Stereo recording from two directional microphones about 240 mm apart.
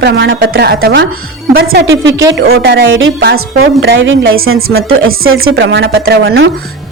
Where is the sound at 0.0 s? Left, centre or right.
Right.